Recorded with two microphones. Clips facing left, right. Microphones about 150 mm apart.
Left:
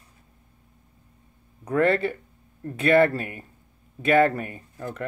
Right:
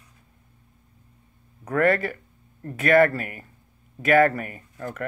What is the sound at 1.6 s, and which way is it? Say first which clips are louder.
Speech: even; 30° left (ahead or behind).